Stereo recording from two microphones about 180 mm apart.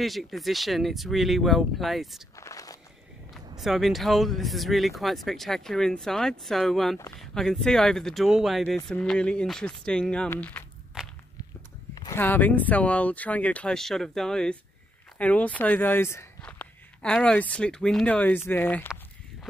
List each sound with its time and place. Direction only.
0.0 s speech: centre (ahead or behind)
2.3 s walk: 20° left (ahead or behind)
3.5 s speech: centre (ahead or behind)
11.9 s a sound: 20° left (ahead or behind)
12.2 s speech: 10° left (ahead or behind)